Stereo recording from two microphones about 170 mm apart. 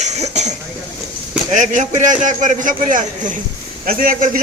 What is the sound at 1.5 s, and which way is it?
A man's voice, 45° right (ahead or behind).